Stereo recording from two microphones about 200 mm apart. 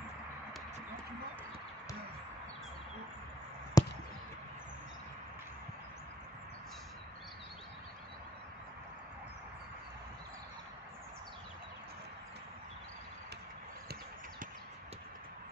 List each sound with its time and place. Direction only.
3.8 s basketball bounce: 15° left (ahead or behind)